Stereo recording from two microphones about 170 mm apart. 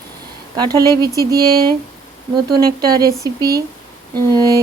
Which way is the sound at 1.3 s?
65° right (ahead or behind).